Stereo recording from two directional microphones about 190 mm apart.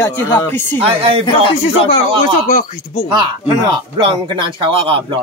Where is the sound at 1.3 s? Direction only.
25° left (ahead or behind).